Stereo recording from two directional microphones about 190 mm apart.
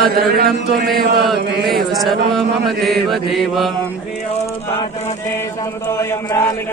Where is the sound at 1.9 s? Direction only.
Centre (ahead or behind).